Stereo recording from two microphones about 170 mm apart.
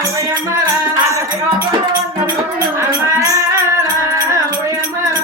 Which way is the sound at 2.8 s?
20° right (ahead or behind).